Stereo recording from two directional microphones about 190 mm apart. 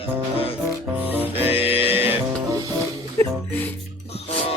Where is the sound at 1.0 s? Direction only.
10° right (ahead or behind).